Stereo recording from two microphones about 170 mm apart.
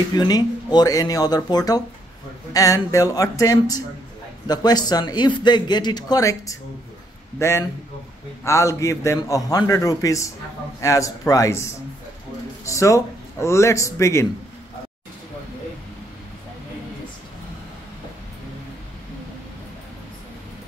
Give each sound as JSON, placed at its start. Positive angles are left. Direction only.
{"t": 0.1, "sound": "a man's voice", "side_deg": 25}